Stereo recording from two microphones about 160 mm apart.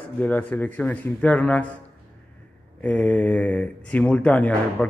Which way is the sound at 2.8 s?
10° left (ahead or behind).